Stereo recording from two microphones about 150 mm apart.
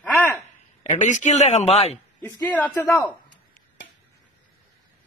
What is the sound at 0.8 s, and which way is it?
A man's voice, 55° left (ahead or behind).